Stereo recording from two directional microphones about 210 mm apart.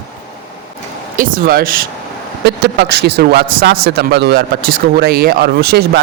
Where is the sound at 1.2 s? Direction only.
45° right (ahead or behind).